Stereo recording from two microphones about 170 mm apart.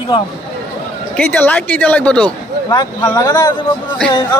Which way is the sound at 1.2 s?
10° left (ahead or behind).